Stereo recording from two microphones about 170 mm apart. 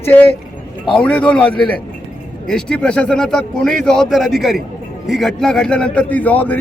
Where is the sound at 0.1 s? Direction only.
10° left (ahead or behind).